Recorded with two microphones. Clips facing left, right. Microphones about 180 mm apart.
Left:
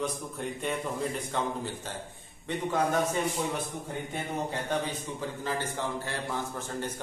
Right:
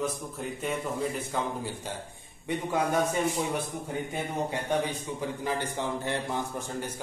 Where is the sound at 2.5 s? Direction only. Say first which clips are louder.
Right 2 dB; 10° right (ahead or behind).